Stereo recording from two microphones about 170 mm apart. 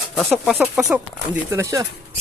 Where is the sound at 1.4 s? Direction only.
20° right (ahead or behind).